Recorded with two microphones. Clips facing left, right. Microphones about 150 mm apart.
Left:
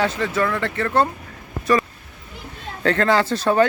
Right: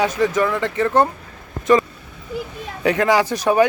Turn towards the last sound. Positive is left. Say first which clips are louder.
# right 1 dB
turn(degrees=-15)  # may be behind; listen again after turning